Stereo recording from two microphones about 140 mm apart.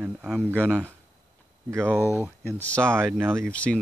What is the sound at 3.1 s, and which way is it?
Speech, 15° right (ahead or behind).